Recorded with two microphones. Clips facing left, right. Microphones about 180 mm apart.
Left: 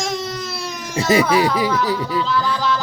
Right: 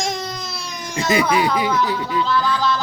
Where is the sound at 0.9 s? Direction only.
35° left (ahead or behind).